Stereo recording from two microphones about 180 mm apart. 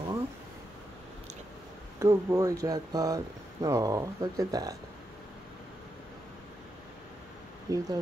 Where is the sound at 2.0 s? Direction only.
15° right (ahead or behind).